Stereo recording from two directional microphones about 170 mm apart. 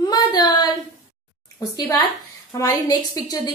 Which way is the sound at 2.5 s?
20° left (ahead or behind).